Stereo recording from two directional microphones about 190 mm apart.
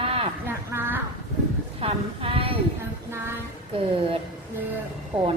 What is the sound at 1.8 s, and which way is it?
Speech, 30° right (ahead or behind).